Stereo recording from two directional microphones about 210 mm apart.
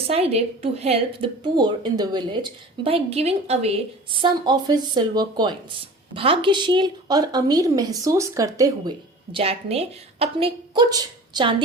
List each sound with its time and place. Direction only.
0.1 s a woman's voice: 30° right (ahead or behind)